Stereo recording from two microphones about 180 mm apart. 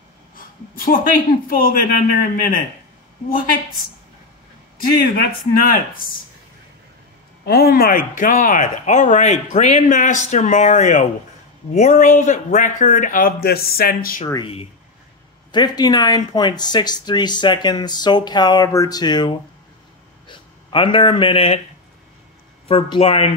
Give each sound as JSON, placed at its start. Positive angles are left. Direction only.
{"t": 0.7, "sound": "speech", "side_deg": 50}
{"t": 4.7, "sound": "a man's voice", "side_deg": 55}
{"t": 7.4, "sound": "speech", "side_deg": 60}
{"t": 14.2, "sound": "speech", "side_deg": 20}
{"t": 15.5, "sound": "speech", "side_deg": 20}
{"t": 22.7, "sound": "speech", "side_deg": 30}